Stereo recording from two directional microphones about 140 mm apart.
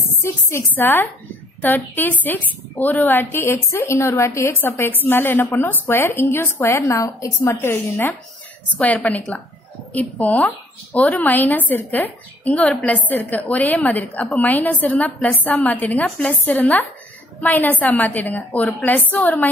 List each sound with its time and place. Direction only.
0.2 s a woman's voice: 20° left (ahead or behind)